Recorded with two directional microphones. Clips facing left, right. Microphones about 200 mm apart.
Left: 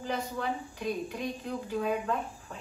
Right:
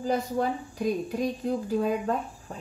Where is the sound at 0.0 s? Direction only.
40° right (ahead or behind).